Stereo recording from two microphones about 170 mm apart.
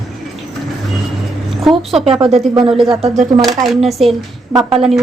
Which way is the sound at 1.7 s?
Centre (ahead or behind).